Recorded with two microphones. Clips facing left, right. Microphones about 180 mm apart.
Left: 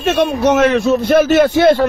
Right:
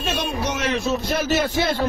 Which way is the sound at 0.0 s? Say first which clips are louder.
Left 11 dB; 70° left (ahead or behind).